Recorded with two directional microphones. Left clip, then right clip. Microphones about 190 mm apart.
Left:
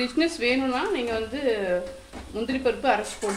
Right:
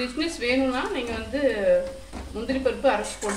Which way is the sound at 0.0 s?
50° left (ahead or behind).